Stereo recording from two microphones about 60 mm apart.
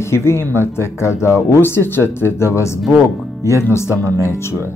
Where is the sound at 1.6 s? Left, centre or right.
Left.